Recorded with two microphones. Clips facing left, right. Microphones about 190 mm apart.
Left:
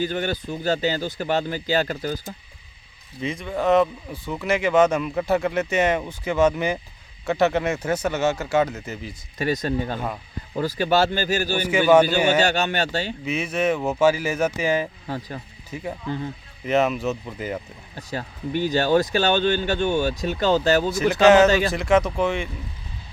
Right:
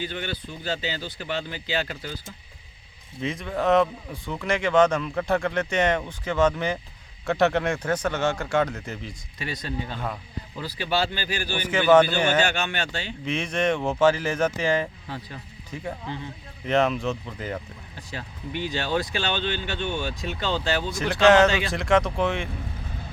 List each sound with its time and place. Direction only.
0.0 s speech: 45° left (ahead or behind)
3.2 s speech: centre (ahead or behind)
9.4 s speech: 45° left (ahead or behind)
11.6 s speech: 10° left (ahead or behind)
12.4 s speech: 40° left (ahead or behind)
13.2 s speech: 5° left (ahead or behind)
15.0 s speech: 45° left (ahead or behind)
15.7 s speech: 5° left (ahead or behind)
16.0 s speech: 45° left (ahead or behind)
16.6 s speech: 5° left (ahead or behind)
17.9 s speech: 40° left (ahead or behind)
20.9 s speech: 5° left (ahead or behind)